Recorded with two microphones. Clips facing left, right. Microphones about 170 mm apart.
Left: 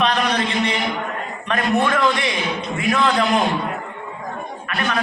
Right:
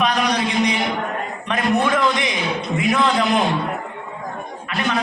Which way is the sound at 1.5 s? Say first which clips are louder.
Even; 20° right (ahead or behind).